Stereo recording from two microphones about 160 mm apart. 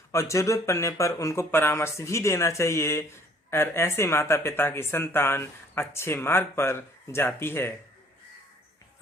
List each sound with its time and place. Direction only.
0.1 s speech: 20° left (ahead or behind)